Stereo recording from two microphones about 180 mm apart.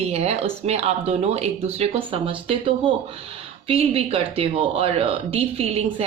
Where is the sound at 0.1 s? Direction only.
35° right (ahead or behind).